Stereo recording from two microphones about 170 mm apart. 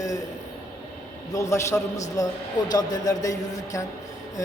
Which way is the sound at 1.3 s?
20° left (ahead or behind).